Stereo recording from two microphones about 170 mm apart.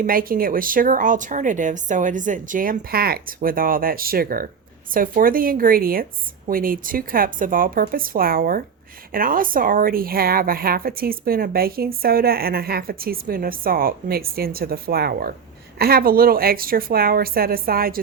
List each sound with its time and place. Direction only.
0.0 s a woman's voice: 55° right (ahead or behind)